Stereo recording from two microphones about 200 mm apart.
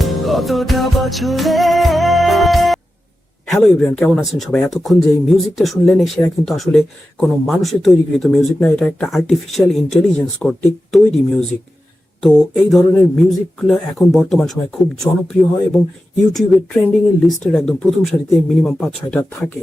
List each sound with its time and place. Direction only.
0.0 s music: centre (ahead or behind)
3.4 s speech: centre (ahead or behind)
12.7 s speech: centre (ahead or behind)